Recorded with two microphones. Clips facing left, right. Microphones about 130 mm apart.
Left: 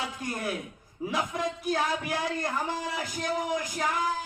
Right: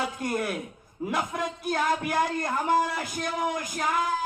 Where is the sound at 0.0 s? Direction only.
60° right (ahead or behind).